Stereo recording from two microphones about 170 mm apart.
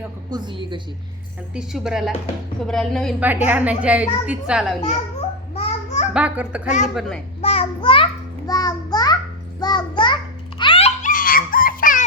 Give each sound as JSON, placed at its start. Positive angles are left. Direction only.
{"t": 0.3, "sound": "a woman's voice", "side_deg": -25}
{"t": 1.5, "sound": "speech", "side_deg": -5}
{"t": 3.2, "sound": "a woman's voice", "side_deg": -10}
{"t": 5.5, "sound": "babbling", "side_deg": 40}
{"t": 6.1, "sound": "a woman's voice", "side_deg": -10}
{"t": 6.7, "sound": "a woman's voice", "side_deg": 45}
{"t": 7.4, "sound": "a child's voice", "side_deg": 35}
{"t": 10.6, "sound": "music", "side_deg": 35}
{"t": 11.1, "sound": "a sound", "side_deg": 55}